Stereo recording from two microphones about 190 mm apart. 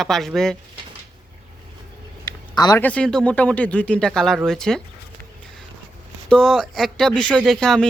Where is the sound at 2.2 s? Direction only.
20° left (ahead or behind).